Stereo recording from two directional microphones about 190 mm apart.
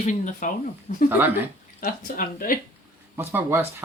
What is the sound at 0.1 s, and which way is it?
Speech, 40° left (ahead or behind).